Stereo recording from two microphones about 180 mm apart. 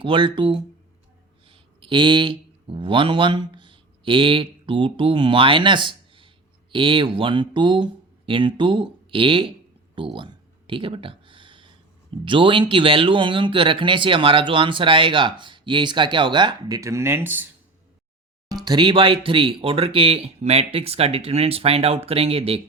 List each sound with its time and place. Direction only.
0.0 s speech: 30° right (ahead or behind); by 17.5 s 10° right (ahead or behind)
18.5 s speech: 25° right (ahead or behind)